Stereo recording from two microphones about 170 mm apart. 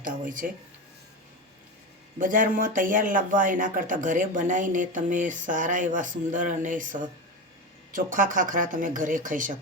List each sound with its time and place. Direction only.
0.0 s speech: 50° right (ahead or behind)
2.1 s speech: 50° right (ahead or behind)